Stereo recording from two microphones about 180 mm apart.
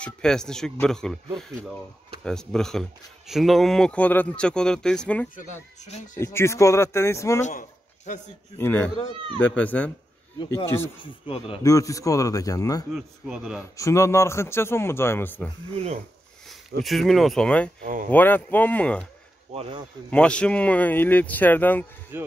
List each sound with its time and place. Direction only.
0.0 s speech: 5° left (ahead or behind)
7.4 s a sound: 45° left (ahead or behind)
8.5 s speech: 10° left (ahead or behind)
11.2 s speech: 30° left (ahead or behind)
11.6 s speech: 20° left (ahead or behind)
12.9 s speech: 5° right (ahead or behind)
13.7 s speech: 15° left (ahead or behind)
15.7 s speech: 35° right (ahead or behind)
16.4 s speech: centre (ahead or behind)
19.5 s speech: 35° right (ahead or behind)
20.1 s speech: 5° left (ahead or behind)
22.1 s speech: 10° right (ahead or behind)